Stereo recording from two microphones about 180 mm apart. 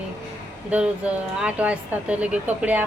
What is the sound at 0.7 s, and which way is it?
Speech, 5° right (ahead or behind).